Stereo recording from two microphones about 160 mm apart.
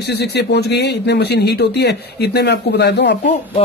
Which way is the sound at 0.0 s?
90° left.